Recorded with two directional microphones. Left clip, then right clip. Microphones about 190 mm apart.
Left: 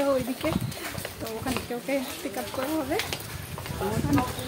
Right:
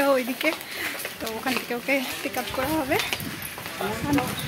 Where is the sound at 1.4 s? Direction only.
10° right (ahead or behind).